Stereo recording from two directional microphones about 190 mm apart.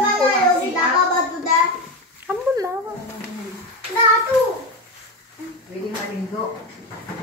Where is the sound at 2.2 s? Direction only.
15° right (ahead or behind).